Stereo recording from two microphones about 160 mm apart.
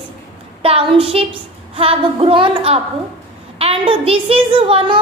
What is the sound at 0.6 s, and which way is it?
A child's voice, 35° right (ahead or behind).